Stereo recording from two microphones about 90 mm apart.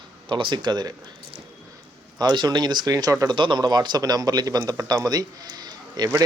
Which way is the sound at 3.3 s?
60° right (ahead or behind).